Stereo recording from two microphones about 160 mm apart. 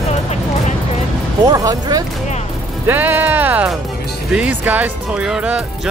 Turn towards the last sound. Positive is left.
turn(degrees=-5)  # may be behind; listen again after turning